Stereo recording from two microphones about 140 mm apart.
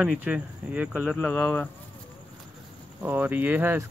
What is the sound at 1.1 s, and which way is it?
Speech, 15° left (ahead or behind).